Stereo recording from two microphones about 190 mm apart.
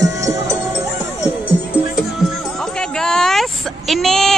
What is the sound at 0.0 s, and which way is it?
Music, 15° right (ahead or behind).